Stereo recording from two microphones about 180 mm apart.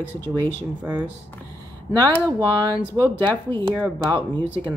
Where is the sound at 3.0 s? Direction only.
10° left (ahead or behind).